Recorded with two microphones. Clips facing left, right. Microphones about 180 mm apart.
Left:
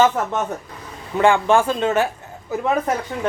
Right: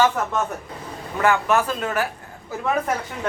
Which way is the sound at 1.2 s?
30° left (ahead or behind).